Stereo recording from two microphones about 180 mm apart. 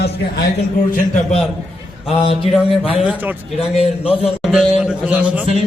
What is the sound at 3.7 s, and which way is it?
Speech, 30° left (ahead or behind).